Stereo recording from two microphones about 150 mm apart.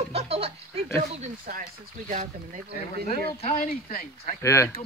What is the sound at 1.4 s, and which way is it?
Speech, 70° right (ahead or behind).